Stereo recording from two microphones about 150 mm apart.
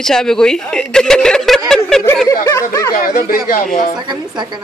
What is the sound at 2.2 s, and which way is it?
Speech, 20° left (ahead or behind).